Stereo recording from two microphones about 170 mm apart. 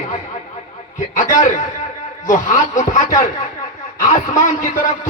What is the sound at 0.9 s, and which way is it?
Speech, 45° left (ahead or behind).